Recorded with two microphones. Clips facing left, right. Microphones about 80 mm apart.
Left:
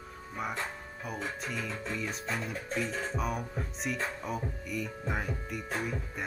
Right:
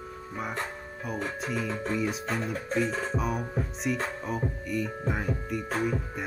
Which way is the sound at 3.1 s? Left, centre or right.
Centre.